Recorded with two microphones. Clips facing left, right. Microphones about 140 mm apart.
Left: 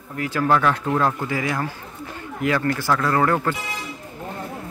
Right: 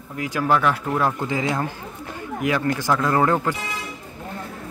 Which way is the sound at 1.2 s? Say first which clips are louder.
Right 1 dB; 20° right (ahead or behind).